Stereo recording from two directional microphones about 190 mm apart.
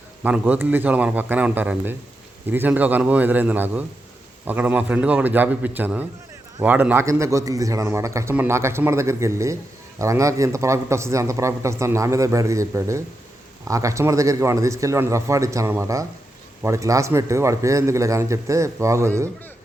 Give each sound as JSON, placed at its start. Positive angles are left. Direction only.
{"t": 0.2, "sound": "speech", "side_deg": -10}